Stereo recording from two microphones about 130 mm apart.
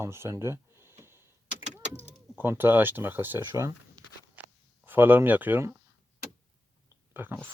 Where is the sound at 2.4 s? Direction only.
15° right (ahead or behind).